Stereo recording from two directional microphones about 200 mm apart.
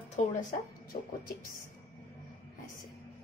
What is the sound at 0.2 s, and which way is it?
Speech, 35° left (ahead or behind).